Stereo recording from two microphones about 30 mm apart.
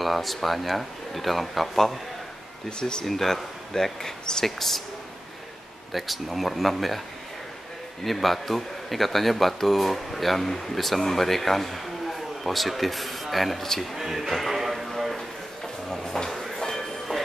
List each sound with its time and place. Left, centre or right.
0.0 s speech: centre
2.8 s speech: left
3.1 s speech: centre
5.9 s speech: centre
8.0 s speech: centre
15.9 s a sound: left